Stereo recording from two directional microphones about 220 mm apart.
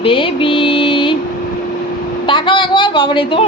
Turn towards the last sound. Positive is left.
turn(degrees=25)  # may be behind; listen again after turning